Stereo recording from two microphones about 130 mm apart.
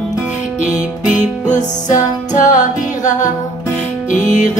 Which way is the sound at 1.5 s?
65° left (ahead or behind).